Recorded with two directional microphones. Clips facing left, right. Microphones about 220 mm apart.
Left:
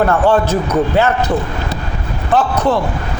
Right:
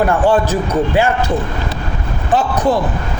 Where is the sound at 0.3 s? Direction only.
15° right (ahead or behind).